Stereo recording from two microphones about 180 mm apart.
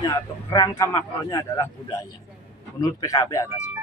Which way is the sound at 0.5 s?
20° left (ahead or behind).